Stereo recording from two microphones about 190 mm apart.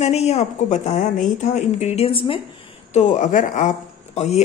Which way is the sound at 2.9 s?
40° left (ahead or behind).